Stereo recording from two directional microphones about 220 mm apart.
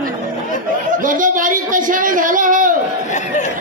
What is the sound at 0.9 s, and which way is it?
Speech, 35° right (ahead or behind).